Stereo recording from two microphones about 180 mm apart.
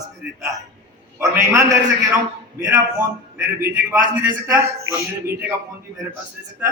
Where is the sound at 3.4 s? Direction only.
15° right (ahead or behind).